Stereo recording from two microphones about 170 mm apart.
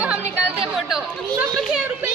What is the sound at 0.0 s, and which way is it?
Music, 10° right (ahead or behind).